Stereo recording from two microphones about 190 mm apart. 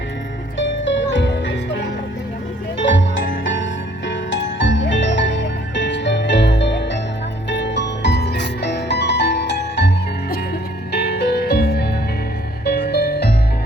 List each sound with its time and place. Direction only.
1.1 s music: 70° left (ahead or behind)
2.7 s music: 75° left (ahead or behind)
10.9 s music: 60° left (ahead or behind)